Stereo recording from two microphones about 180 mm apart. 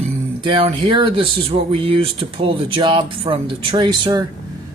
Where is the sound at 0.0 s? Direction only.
30° right (ahead or behind).